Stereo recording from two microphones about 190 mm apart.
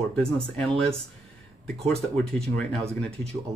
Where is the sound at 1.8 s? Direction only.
Centre (ahead or behind).